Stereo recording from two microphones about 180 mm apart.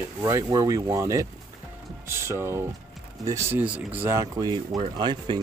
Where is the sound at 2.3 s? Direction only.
15° right (ahead or behind).